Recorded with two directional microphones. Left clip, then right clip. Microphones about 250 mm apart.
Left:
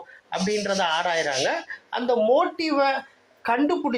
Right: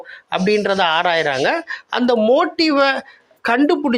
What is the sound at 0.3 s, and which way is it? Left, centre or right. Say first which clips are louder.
Speech: right 8 dB; right.